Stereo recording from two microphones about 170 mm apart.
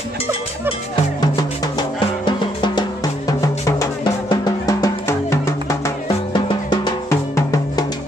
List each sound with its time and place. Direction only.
2.2 s drum: 25° left (ahead or behind)
7.1 s music: 20° left (ahead or behind)